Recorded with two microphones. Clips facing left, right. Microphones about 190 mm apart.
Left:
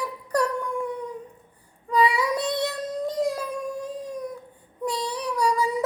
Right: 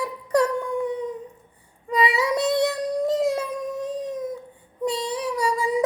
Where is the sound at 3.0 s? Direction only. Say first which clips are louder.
Right 3 dB; 25° right (ahead or behind).